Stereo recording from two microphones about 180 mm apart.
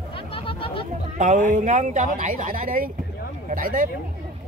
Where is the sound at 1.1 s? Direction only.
45° right (ahead or behind).